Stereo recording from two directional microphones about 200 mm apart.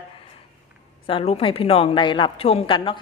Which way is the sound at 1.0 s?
30° left (ahead or behind).